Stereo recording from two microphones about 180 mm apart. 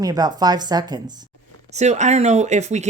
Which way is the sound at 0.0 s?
20° right (ahead or behind).